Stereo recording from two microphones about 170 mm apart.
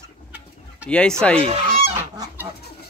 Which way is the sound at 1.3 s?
35° right (ahead or behind).